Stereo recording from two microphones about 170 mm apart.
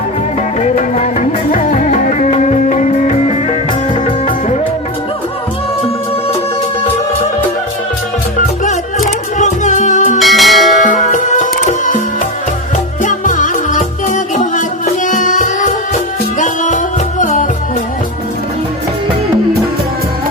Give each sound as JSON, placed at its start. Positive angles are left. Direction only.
{"t": 0.6, "sound": "music", "side_deg": 40}
{"t": 8.4, "sound": "music", "side_deg": 50}
{"t": 10.2, "sound": "church bell", "side_deg": 0}
{"t": 10.8, "sound": "music", "side_deg": 45}
{"t": 13.0, "sound": "music", "side_deg": 50}